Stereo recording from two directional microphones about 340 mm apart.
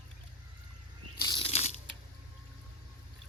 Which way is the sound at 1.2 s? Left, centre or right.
Centre.